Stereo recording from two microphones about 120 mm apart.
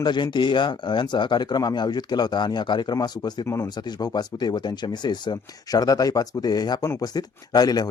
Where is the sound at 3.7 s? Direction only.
35° left (ahead or behind).